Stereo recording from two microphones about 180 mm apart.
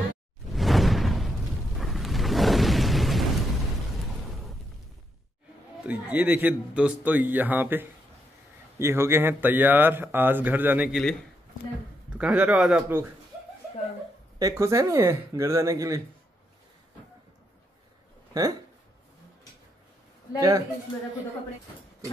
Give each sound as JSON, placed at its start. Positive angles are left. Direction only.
{"t": 0.5, "sound": "a sound", "side_deg": 0}
{"t": 5.9, "sound": "a man's voice", "side_deg": -10}
{"t": 14.4, "sound": "a man's voice", "side_deg": -20}
{"t": 18.3, "sound": "speech", "side_deg": -20}
{"t": 20.3, "sound": "speech", "side_deg": -20}